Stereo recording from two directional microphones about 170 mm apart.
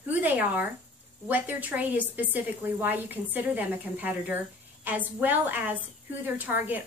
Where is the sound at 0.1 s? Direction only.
10° right (ahead or behind).